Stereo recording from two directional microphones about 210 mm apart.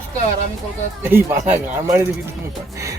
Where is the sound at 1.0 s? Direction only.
10° right (ahead or behind).